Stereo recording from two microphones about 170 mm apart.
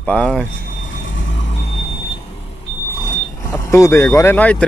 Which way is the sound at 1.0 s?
90° left.